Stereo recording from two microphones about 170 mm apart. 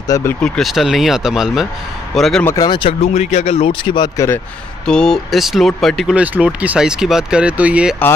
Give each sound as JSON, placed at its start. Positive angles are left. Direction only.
{"t": 0.1, "sound": "speech", "side_deg": 15}
{"t": 0.6, "sound": "speech", "side_deg": 0}
{"t": 2.4, "sound": "speech", "side_deg": 20}
{"t": 3.0, "sound": "speech", "side_deg": 40}
{"t": 4.8, "sound": "speech", "side_deg": 5}